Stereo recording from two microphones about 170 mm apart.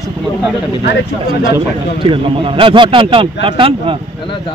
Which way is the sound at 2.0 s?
30° right (ahead or behind).